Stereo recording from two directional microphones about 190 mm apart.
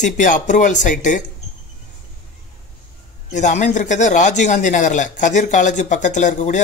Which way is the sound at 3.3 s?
40° left (ahead or behind).